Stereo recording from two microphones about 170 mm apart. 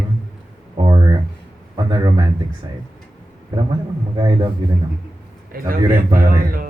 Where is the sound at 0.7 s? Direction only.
25° right (ahead or behind).